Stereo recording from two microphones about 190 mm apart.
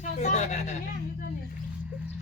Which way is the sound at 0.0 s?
40° left (ahead or behind).